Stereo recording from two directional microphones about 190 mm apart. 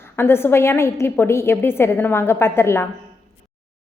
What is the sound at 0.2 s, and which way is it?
A woman's voice, 10° left (ahead or behind).